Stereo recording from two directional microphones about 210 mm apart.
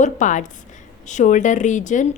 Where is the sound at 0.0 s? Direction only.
35° left (ahead or behind).